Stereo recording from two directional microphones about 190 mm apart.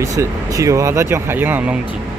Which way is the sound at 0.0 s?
15° right (ahead or behind).